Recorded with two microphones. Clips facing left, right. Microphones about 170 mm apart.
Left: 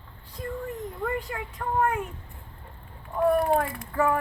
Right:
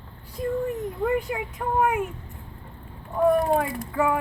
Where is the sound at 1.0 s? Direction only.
15° right (ahead or behind).